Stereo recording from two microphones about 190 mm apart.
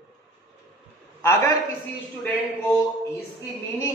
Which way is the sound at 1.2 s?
15° left (ahead or behind).